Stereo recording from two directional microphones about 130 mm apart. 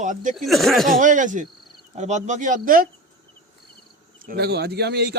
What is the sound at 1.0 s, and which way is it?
Speech, 80° right.